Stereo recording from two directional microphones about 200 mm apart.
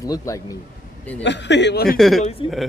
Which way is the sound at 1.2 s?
60° left (ahead or behind).